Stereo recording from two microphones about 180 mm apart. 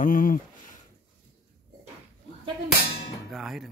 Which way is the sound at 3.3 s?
Centre (ahead or behind).